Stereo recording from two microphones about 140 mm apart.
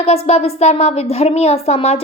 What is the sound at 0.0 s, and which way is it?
A woman's voice, 45° left (ahead or behind).